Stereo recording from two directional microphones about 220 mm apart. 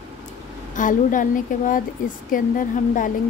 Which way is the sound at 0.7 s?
35° left (ahead or behind).